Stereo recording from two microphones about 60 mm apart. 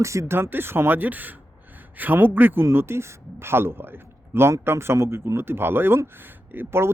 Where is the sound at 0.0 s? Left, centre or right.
Right.